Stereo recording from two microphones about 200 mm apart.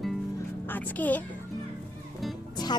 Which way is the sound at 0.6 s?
10° left (ahead or behind).